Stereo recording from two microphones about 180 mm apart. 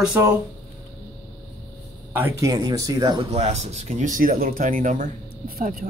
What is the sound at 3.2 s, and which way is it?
Speech, 35° right (ahead or behind).